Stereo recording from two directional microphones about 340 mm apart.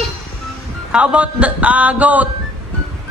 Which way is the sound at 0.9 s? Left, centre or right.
Centre.